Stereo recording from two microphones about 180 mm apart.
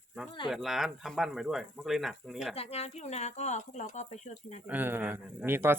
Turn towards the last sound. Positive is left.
turn(degrees=-10)  # may be behind; listen again after turning